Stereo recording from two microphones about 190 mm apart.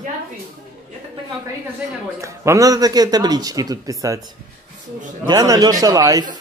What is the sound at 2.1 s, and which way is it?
Speech, 15° right (ahead or behind).